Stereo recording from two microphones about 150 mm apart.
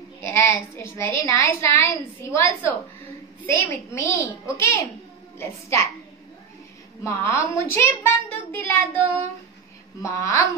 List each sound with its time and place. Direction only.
0.2 s a woman's voice: 20° left (ahead or behind)
7.1 s a woman's voice: 15° left (ahead or behind)
9.0 s speech: 35° right (ahead or behind)
9.9 s a woman's voice: 20° left (ahead or behind)